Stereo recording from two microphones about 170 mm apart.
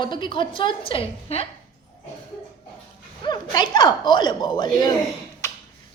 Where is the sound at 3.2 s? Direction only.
25° left (ahead or behind).